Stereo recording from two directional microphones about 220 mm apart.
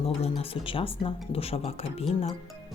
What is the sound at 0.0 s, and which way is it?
Speech, 25° left (ahead or behind).